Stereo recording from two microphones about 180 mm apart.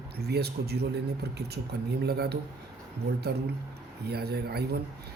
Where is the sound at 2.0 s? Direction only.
65° right (ahead or behind).